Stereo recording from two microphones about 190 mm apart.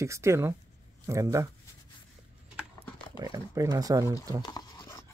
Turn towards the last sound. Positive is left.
turn(degrees=20)  # may be behind; listen again after turning